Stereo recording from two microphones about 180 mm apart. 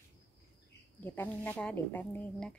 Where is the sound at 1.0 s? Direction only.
10° left (ahead or behind).